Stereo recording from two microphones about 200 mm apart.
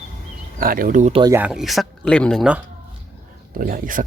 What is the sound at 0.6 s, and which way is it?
Speech, 45° right (ahead or behind).